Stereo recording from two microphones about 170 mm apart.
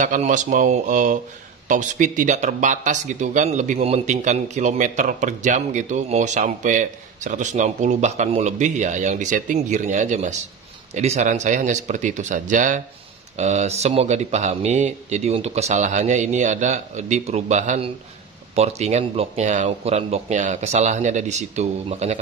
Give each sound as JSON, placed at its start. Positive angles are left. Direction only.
{"t": 0.0, "sound": "speech", "side_deg": -50}